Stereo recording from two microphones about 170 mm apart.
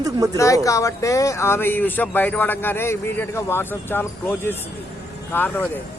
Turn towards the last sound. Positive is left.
turn(degrees=10)  # may be behind; listen again after turning